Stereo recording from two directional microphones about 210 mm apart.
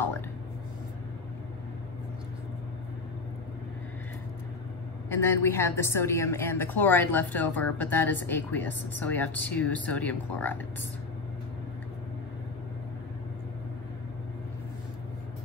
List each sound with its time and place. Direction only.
5.1 s a woman's voice: 10° left (ahead or behind)